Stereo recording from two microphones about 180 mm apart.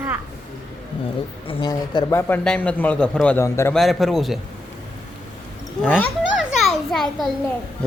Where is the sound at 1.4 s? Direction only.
30° left (ahead or behind); by 3.7 s 15° left (ahead or behind).